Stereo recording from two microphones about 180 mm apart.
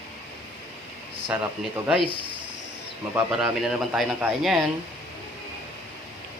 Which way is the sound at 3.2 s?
5° right (ahead or behind).